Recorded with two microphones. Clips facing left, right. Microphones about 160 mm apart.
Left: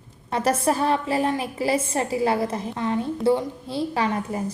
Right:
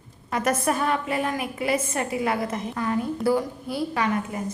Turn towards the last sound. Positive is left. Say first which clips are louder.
# left 1 dB
turn(degrees=30)  # may be behind; listen again after turning